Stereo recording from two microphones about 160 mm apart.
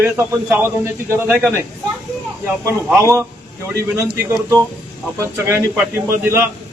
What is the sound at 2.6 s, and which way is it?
A man's voice, 20° right (ahead or behind).